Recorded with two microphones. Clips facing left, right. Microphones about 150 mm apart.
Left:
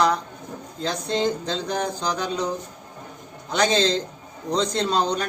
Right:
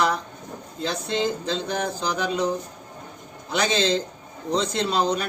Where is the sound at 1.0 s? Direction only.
35° left (ahead or behind).